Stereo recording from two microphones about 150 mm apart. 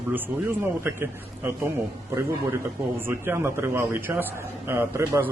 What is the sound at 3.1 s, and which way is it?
A man's voice, 15° right (ahead or behind).